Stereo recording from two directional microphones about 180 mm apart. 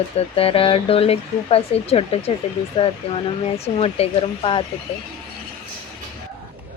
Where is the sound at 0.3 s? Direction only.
30° left (ahead or behind).